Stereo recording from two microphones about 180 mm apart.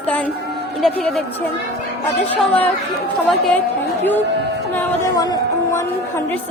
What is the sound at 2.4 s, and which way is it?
A woman's voice, 10° left (ahead or behind).